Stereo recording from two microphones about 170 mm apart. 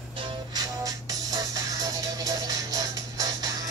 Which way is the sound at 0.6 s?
20° right (ahead or behind).